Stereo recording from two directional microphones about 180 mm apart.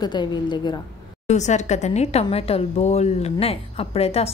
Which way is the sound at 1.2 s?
40° left (ahead or behind).